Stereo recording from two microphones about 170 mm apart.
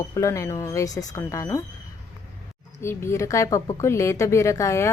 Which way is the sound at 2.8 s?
15° left (ahead or behind).